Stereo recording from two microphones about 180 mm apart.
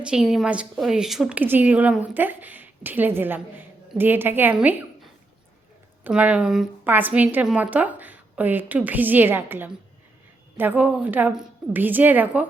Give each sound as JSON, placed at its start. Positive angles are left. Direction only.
{"t": 0.0, "sound": "a woman's voice", "side_deg": -5}
{"t": 6.1, "sound": "a woman's voice", "side_deg": -5}